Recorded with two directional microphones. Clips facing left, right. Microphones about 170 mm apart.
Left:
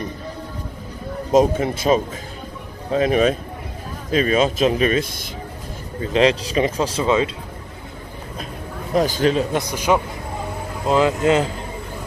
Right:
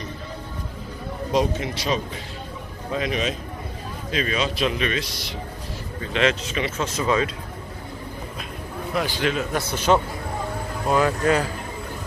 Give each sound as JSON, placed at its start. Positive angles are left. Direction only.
{"t": 1.3, "sound": "a man's voice", "side_deg": 45}
{"t": 5.9, "sound": "speech", "side_deg": 35}
{"t": 8.9, "sound": "speech", "side_deg": 40}
{"t": 9.6, "sound": "speech", "side_deg": 10}